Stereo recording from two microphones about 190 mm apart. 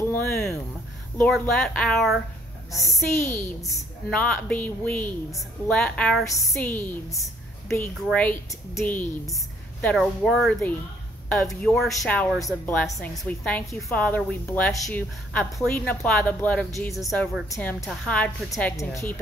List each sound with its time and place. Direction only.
0.0 s a sound: 10° left (ahead or behind)
1.1 s speech: 10° left (ahead or behind)
2.7 s a woman's voice: 15° left (ahead or behind)
12.9 s a woman's voice: 15° left (ahead or behind)
13.2 s a woman's voice: 5° left (ahead or behind)